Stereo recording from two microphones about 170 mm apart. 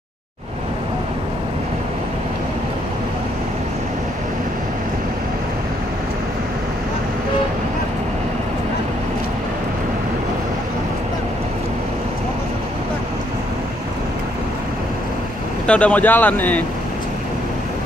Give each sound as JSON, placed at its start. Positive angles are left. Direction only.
{"t": 15.6, "sound": "speech", "side_deg": 5}